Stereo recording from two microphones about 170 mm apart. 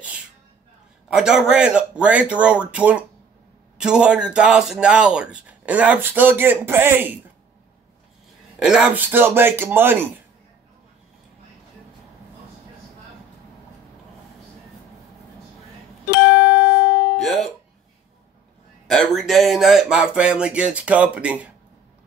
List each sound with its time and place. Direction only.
1.1 s speech: 5° right (ahead or behind)
8.5 s speech: 5° right (ahead or behind)
16.7 s music: 70° left (ahead or behind)
17.2 s music: centre (ahead or behind)
18.9 s speech: centre (ahead or behind)